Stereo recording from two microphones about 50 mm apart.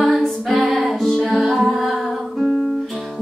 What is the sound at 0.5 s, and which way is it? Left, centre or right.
Music, centre.